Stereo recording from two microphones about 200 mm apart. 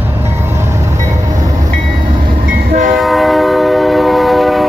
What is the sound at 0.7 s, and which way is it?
Train, 15° right (ahead or behind).